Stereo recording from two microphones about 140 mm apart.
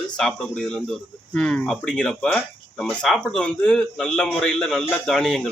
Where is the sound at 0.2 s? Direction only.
5° left (ahead or behind).